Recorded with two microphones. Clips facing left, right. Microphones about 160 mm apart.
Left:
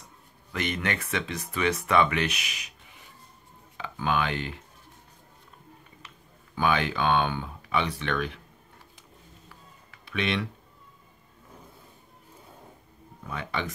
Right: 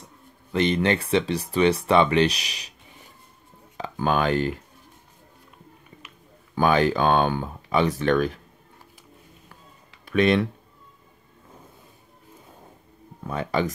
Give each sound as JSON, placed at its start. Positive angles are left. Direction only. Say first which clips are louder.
{"t": 0.5, "sound": "speech", "louder": "right 9 dB", "side_deg": -30}
{"t": 3.7, "sound": "speech", "louder": "right 4 dB", "side_deg": -40}
{"t": 6.5, "sound": "speech", "louder": "right 6 dB", "side_deg": -40}
{"t": 10.0, "sound": "speech", "louder": "right 9 dB", "side_deg": -45}
{"t": 13.3, "sound": "speech", "louder": "right 8 dB", "side_deg": -40}